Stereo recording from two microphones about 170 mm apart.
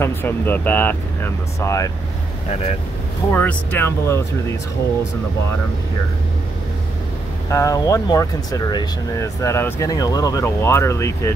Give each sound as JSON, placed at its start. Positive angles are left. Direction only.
{"t": 0.0, "sound": "speech", "side_deg": 10}
{"t": 3.3, "sound": "speech", "side_deg": 10}
{"t": 7.4, "sound": "speech", "side_deg": 20}